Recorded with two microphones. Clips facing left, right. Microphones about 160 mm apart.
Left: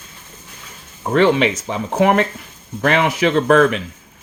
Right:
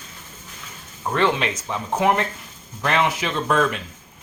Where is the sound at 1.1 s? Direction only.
75° left (ahead or behind).